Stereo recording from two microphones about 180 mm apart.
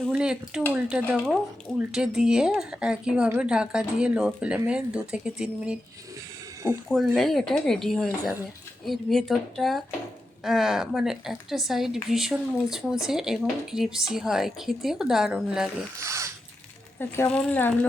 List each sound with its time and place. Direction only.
0.1 s speech: 5° right (ahead or behind)
6.8 s speech: centre (ahead or behind)
16.0 s speech: 15° right (ahead or behind)
17.0 s speech: 10° left (ahead or behind)